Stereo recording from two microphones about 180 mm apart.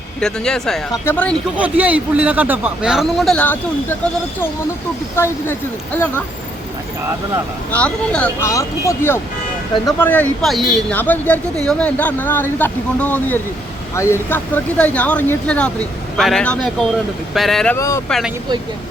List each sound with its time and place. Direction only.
0.2 s speech: 5° left (ahead or behind)
1.5 s a man's voice: 10° right (ahead or behind); by 6.2 s 10° left (ahead or behind)
7.7 s speech: 10° left (ahead or behind)
17.7 s speech: 15° left (ahead or behind)